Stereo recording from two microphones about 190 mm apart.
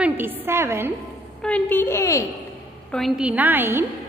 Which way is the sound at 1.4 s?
5° left (ahead or behind).